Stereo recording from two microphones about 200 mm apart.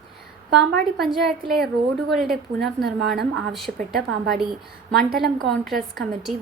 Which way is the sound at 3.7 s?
55° right (ahead or behind).